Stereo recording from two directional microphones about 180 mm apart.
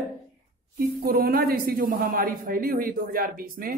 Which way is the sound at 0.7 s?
55° right (ahead or behind).